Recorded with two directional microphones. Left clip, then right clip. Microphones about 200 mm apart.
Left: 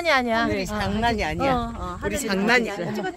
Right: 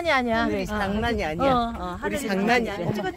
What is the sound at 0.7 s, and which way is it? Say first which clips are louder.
Speech: left 3 dB; 45° left (ahead or behind).